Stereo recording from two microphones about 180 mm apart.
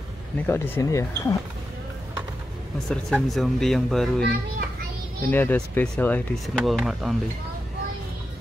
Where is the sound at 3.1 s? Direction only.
Centre (ahead or behind).